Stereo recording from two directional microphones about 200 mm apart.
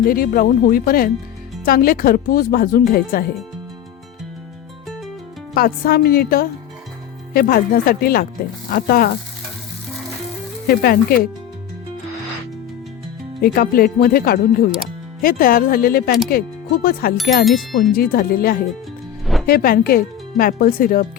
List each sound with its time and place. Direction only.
0.0 s speech: 45° left (ahead or behind)
5.5 s speech: 50° left (ahead or behind)
10.7 s speech: 50° left (ahead or behind)
13.4 s speech: 45° left (ahead or behind)
17.4 s speech: centre (ahead or behind)
17.9 s speech: 50° left (ahead or behind)
19.2 s music: centre (ahead or behind)
19.5 s speech: 50° left (ahead or behind)